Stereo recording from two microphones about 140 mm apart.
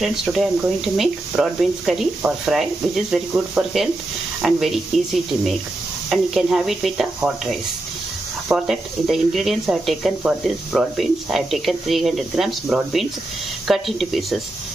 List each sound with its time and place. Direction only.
0.0 s speech: centre (ahead or behind)
8.5 s speech: centre (ahead or behind)